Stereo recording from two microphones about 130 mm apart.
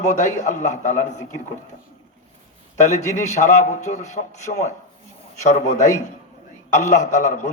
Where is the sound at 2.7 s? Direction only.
70° left (ahead or behind).